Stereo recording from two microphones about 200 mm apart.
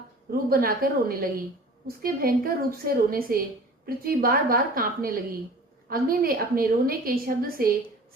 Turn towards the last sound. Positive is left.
turn(degrees=-45)  # may be behind; listen again after turning